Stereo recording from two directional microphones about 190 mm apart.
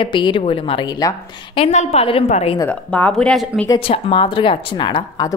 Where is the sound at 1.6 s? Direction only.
35° left (ahead or behind).